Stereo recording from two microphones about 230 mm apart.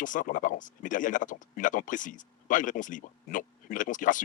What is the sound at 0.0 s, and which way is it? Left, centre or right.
Speech, left.